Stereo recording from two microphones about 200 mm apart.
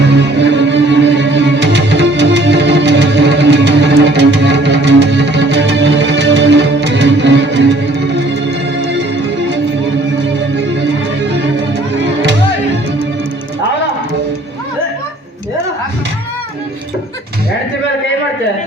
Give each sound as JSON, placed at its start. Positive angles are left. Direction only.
{"t": 0.0, "sound": "music", "side_deg": -60}